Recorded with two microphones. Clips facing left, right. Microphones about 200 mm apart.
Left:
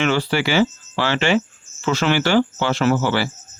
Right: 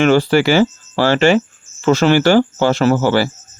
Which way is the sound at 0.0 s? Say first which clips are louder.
Right 8 dB; 45° right (ahead or behind).